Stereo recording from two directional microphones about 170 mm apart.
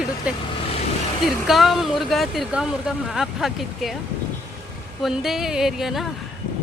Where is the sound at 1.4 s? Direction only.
Centre (ahead or behind).